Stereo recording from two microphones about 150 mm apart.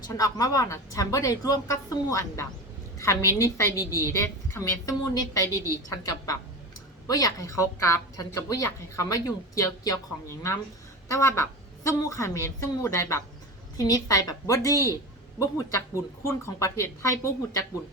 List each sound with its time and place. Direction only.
0.0 s a woman's voice: 25° left (ahead or behind)